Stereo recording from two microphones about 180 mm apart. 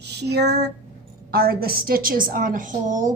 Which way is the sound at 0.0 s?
65° right (ahead or behind).